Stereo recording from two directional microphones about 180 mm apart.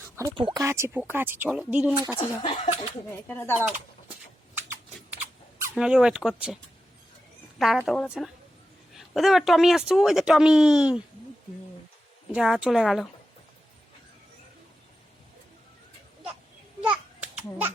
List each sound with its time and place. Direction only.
0.2 s speech: 25° right (ahead or behind); by 2.0 s 5° right (ahead or behind)
2.1 s speech: 30° left (ahead or behind)
3.1 s speech: 15° left (ahead or behind)
5.7 s speech: 5° right (ahead or behind)
7.6 s speech: centre (ahead or behind)
12.3 s speech: 5° right (ahead or behind)